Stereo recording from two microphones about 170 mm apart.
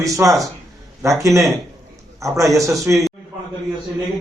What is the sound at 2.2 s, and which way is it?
Speech, 20° right (ahead or behind).